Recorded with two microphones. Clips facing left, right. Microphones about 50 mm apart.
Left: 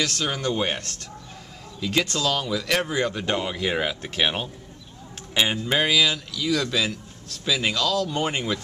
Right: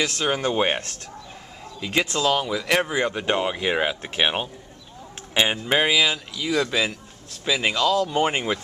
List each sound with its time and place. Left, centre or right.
0.0 s speech: centre